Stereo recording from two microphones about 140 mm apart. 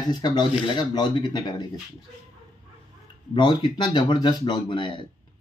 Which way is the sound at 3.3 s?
35° left (ahead or behind).